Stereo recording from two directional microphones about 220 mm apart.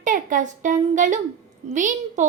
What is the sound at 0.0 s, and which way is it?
A woman's voice, 35° right (ahead or behind).